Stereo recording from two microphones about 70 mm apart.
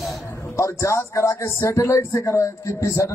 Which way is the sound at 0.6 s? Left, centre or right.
Left.